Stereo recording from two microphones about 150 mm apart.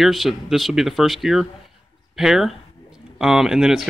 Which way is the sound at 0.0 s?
Centre (ahead or behind).